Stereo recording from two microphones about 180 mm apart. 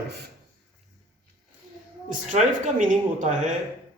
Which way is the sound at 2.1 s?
40° right (ahead or behind).